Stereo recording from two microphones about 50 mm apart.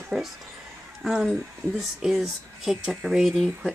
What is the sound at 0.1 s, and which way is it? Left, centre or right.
Speech, centre.